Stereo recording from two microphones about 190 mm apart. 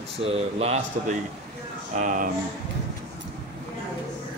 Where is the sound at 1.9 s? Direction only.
45° right (ahead or behind).